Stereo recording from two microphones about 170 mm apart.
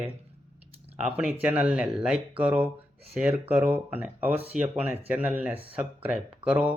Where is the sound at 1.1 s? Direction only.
5° right (ahead or behind).